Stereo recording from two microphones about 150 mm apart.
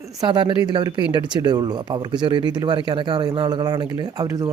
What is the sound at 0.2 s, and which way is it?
Speech, 30° right (ahead or behind).